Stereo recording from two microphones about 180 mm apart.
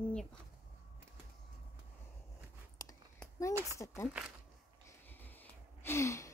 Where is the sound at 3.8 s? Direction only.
15° left (ahead or behind).